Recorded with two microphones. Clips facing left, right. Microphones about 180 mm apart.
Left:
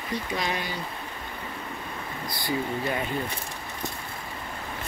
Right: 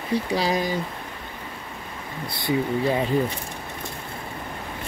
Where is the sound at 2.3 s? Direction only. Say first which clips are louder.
Right 6 dB; 25° right (ahead or behind).